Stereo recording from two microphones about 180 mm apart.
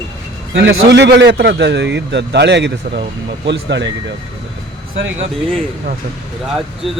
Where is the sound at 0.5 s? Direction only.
70° right (ahead or behind).